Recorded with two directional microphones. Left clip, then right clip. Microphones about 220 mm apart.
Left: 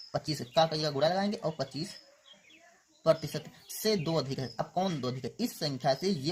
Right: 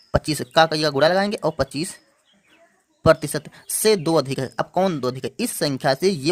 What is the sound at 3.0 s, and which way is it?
Speech, 40° right (ahead or behind).